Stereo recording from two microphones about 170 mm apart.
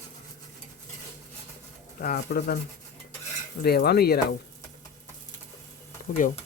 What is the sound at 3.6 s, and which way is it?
Speech, 70° left (ahead or behind).